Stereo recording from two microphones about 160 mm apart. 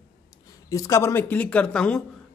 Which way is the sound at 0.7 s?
20° left (ahead or behind).